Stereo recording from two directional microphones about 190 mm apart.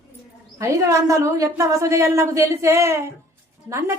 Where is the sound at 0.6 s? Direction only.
15° right (ahead or behind).